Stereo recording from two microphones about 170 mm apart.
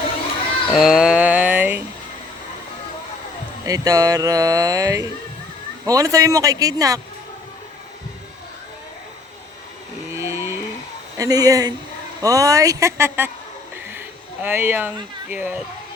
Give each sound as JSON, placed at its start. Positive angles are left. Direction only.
{"t": 0.7, "sound": "a sound", "side_deg": 0}
{"t": 3.7, "sound": "speech", "side_deg": -20}
{"t": 10.1, "sound": "vehicle", "side_deg": -15}
{"t": 11.2, "sound": "speech", "side_deg": -20}
{"t": 14.4, "sound": "speech", "side_deg": -10}